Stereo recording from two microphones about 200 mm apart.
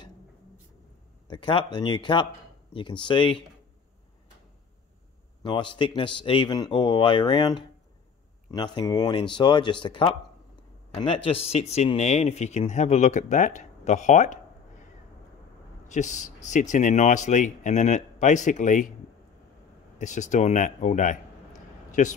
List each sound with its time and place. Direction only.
1.2 s a man's voice: 20° left (ahead or behind)
5.4 s a man's voice: 25° left (ahead or behind)
15.9 s speech: 35° left (ahead or behind)
20.0 s speech: 35° left (ahead or behind)